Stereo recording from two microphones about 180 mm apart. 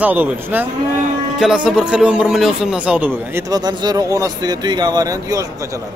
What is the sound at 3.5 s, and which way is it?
Speech, 20° right (ahead or behind).